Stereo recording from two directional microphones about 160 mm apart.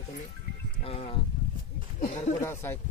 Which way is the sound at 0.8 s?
40° left (ahead or behind).